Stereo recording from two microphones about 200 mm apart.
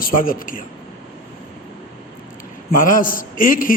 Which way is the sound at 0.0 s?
45° left (ahead or behind).